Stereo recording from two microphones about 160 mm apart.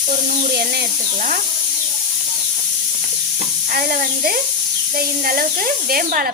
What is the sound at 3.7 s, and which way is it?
Speech, 65° right (ahead or behind).